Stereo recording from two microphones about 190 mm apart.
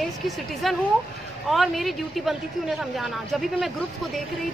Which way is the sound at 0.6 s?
Centre (ahead or behind).